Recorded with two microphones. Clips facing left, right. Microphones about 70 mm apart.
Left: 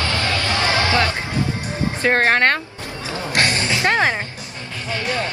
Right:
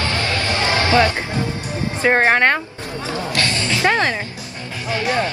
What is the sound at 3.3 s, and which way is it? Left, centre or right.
Music, left.